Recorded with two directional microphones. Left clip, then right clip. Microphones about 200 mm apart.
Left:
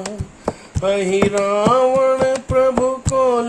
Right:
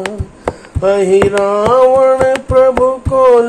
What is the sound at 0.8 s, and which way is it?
Music, 15° right (ahead or behind).